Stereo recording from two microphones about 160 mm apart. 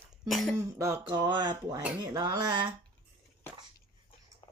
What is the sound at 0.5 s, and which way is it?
Speech, 20° right (ahead or behind).